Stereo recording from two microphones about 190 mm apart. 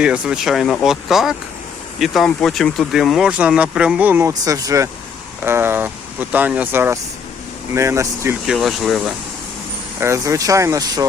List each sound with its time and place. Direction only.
0.0 s speech: 5° right (ahead or behind)
8.4 s speech: centre (ahead or behind)
10.0 s speech: 15° right (ahead or behind)